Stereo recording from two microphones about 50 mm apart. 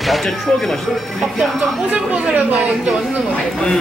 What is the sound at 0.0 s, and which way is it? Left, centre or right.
Speech, centre.